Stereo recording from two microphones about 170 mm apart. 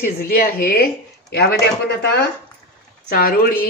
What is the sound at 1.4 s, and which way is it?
Speech, 70° left (ahead or behind).